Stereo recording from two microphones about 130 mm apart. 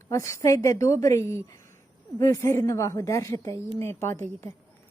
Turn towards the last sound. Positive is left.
turn(degrees=20)  # may be behind; listen again after turning